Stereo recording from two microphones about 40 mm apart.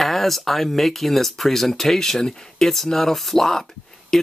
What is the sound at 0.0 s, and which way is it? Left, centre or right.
Speech, centre.